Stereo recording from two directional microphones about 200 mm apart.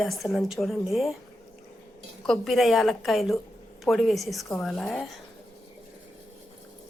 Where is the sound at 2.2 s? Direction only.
Centre (ahead or behind).